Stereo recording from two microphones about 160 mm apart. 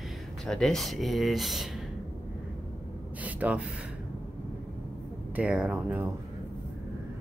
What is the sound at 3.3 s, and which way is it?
Speech, 10° right (ahead or behind).